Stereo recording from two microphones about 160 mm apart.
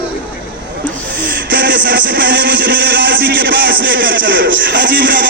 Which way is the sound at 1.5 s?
90° right.